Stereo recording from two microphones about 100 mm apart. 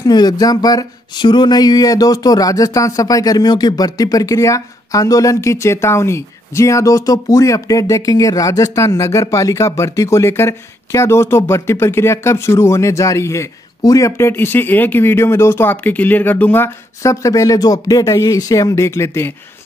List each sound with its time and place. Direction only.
0.0 s speech: 45° left (ahead or behind); by 19.3 s 25° left (ahead or behind)